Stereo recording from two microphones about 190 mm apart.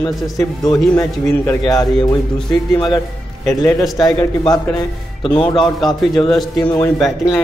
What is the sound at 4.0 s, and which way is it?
A man's voice, 20° left (ahead or behind).